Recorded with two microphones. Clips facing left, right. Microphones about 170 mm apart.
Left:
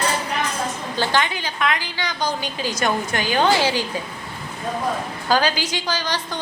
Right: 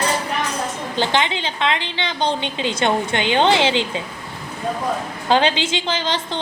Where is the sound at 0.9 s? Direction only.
20° right (ahead or behind).